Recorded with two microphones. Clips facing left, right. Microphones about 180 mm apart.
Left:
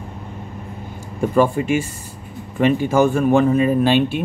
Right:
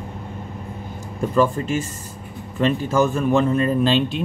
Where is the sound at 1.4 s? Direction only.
10° left (ahead or behind).